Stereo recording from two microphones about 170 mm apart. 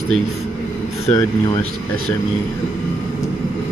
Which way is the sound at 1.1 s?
30° left (ahead or behind).